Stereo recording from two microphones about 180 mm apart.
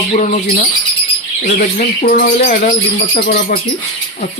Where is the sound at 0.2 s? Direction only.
45° left (ahead or behind).